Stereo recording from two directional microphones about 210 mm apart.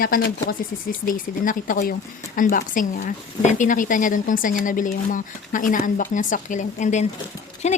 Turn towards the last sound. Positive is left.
turn(degrees=30)  # may be behind; listen again after turning